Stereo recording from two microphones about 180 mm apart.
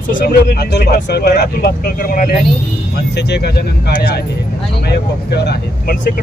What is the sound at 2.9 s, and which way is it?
Speech, 65° left (ahead or behind).